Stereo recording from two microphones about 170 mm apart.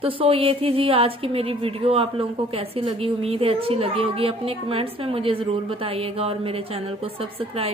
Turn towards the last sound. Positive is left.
turn(degrees=-35)  # may be behind; listen again after turning